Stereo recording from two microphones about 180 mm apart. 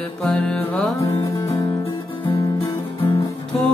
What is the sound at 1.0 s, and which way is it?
Music, 20° left (ahead or behind).